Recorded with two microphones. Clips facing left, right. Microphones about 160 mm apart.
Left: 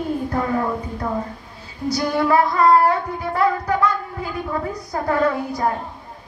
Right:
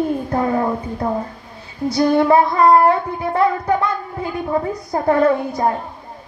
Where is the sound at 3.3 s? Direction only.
25° right (ahead or behind).